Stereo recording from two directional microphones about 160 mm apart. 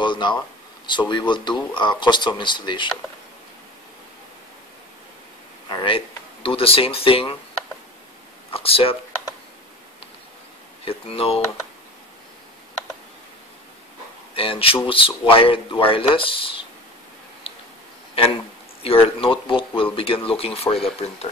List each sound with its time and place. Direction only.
0.0 s a sound: 30° left (ahead or behind)
0.8 s speech: 30° left (ahead or behind)
5.7 s speech: 30° left (ahead or behind)
8.5 s speech: 35° left (ahead or behind)
10.9 s speech: 35° left (ahead or behind)
14.3 s speech: 35° left (ahead or behind)
18.8 s speech: 35° left (ahead or behind)